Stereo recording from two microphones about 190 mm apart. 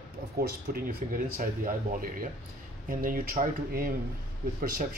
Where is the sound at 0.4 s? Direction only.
50° right (ahead or behind).